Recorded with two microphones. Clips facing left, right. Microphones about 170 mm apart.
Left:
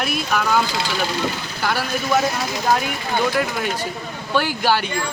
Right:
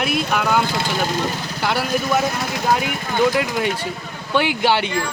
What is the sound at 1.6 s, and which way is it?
Speech, 25° right (ahead or behind).